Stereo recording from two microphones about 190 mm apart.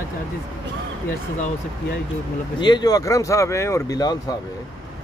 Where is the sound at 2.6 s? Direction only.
20° left (ahead or behind).